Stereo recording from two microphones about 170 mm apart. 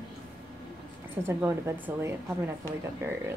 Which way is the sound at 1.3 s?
15° right (ahead or behind).